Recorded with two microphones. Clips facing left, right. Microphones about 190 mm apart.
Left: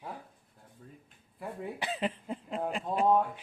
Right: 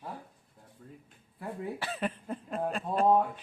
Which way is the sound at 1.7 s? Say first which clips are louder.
Left 1 dB; 20° left (ahead or behind).